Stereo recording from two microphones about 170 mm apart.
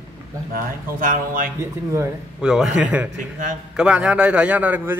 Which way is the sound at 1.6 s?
15° right (ahead or behind).